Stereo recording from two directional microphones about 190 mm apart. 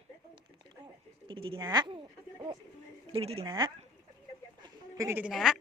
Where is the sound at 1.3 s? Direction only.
30° right (ahead or behind).